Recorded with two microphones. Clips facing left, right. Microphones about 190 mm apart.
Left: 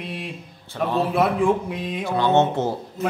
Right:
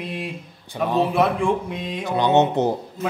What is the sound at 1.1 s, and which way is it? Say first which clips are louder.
Speech: even; centre (ahead or behind).